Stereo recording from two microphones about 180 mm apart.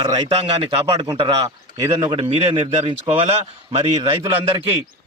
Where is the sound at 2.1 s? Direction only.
30° right (ahead or behind).